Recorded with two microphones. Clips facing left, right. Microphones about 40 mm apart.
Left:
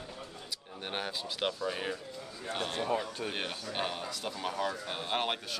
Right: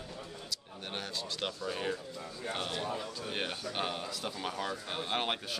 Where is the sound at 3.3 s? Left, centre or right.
Centre.